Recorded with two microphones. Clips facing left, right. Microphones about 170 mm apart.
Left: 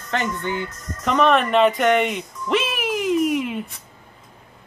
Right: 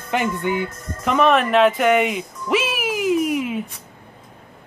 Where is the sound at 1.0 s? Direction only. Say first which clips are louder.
Right 1 dB; 5° right (ahead or behind).